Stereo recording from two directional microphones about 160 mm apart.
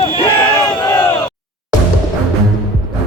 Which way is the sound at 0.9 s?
15° left (ahead or behind).